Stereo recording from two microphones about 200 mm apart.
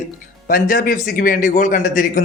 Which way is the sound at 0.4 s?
45° left (ahead or behind).